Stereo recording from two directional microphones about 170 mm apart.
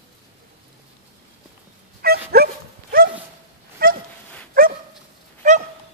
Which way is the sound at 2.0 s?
65° right (ahead or behind).